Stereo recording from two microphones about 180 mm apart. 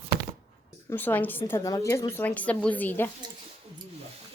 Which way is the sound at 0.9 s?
10° left (ahead or behind).